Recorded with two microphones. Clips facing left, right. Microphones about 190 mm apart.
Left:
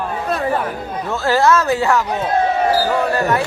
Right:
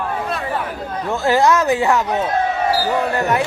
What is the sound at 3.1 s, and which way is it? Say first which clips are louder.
Speech: left 1 dB; 20° right (ahead or behind).